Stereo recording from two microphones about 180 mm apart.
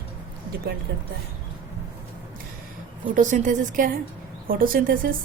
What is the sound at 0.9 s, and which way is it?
Speech, 65° right (ahead or behind).